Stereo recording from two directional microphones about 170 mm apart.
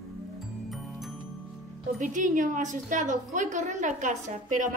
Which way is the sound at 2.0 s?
45° right (ahead or behind).